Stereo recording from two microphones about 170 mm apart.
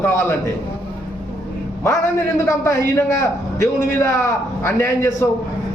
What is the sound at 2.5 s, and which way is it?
A man's voice, 15° left (ahead or behind).